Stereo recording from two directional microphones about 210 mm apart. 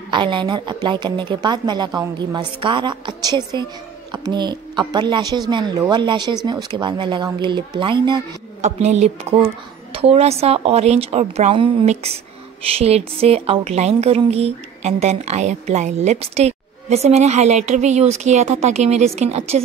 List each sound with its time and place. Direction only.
0.1 s speech: 20° right (ahead or behind)
8.5 s a woman's voice: 30° right (ahead or behind)